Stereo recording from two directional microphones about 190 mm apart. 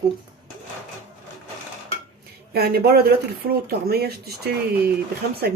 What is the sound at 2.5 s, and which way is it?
Speech, 55° right (ahead or behind).